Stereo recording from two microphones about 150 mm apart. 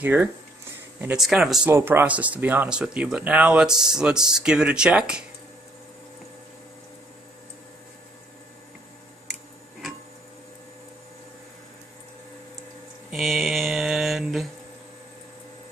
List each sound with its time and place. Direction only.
0.0 s speech: 15° right (ahead or behind)
1.1 s speech: centre (ahead or behind)
1.7 s speech: 15° right (ahead or behind)
13.1 s mantra: centre (ahead or behind)